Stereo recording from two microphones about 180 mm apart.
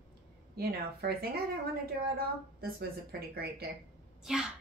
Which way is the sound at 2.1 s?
60° right (ahead or behind).